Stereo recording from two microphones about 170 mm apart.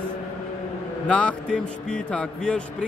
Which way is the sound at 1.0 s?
5° left (ahead or behind).